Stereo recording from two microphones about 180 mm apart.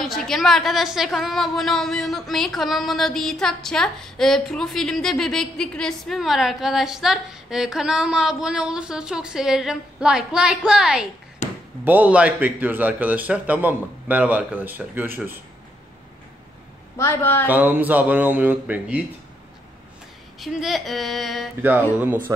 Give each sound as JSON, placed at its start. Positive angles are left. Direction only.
{"t": 0.0, "sound": "a woman's voice", "side_deg": 0}
{"t": 11.4, "sound": "basketball bounce", "side_deg": 40}
{"t": 11.8, "sound": "a man's voice", "side_deg": -10}
{"t": 17.0, "sound": "a woman's voice", "side_deg": 15}
{"t": 17.5, "sound": "a man's voice", "side_deg": -10}
{"t": 20.3, "sound": "a woman's voice", "side_deg": 0}
{"t": 21.5, "sound": "a man's voice", "side_deg": -10}